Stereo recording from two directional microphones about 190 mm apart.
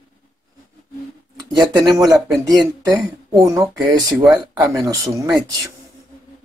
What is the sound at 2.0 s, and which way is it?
Speech, 20° right (ahead or behind).